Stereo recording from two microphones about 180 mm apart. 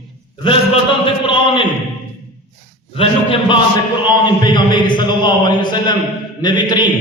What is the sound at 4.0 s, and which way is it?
A man's voice, 25° left (ahead or behind).